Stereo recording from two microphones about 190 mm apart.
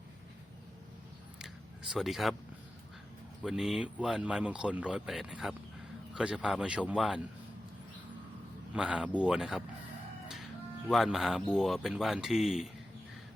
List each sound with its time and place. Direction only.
1.9 s speech: centre (ahead or behind)
3.4 s speech: centre (ahead or behind)
8.7 s speech: 5° right (ahead or behind)
10.8 s speech: centre (ahead or behind)